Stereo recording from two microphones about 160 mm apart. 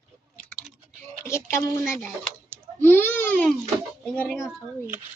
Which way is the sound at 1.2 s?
15° left (ahead or behind).